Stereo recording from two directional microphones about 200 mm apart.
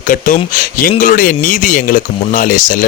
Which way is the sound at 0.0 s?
40° left (ahead or behind).